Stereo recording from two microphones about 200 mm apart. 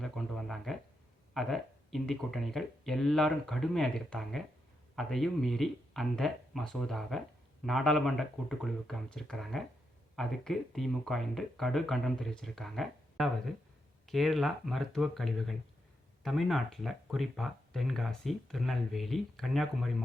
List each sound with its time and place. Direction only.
0.0 s speech: centre (ahead or behind)